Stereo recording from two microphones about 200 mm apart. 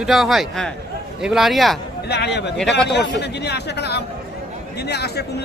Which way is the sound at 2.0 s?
55° left (ahead or behind).